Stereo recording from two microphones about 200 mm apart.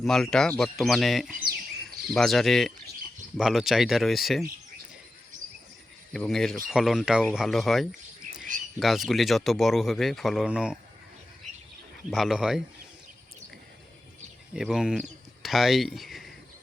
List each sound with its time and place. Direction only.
0.0 s speech: centre (ahead or behind)
6.1 s speech: centre (ahead or behind)
11.5 s bird: 35° right (ahead or behind)
12.1 s speech: centre (ahead or behind)
14.5 s speech: 5° right (ahead or behind)